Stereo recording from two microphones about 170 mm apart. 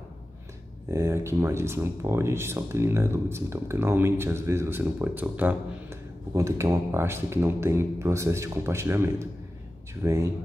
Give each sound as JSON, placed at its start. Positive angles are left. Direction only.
{"t": 0.8, "sound": "speech", "side_deg": -15}